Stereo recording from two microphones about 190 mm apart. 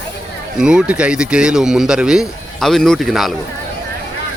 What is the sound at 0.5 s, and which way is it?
Speech, 5° right (ahead or behind).